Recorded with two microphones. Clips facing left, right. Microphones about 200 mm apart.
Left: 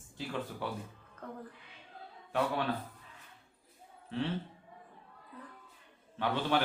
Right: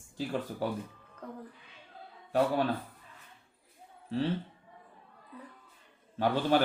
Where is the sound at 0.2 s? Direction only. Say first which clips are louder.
Right 5 dB; 40° right (ahead or behind).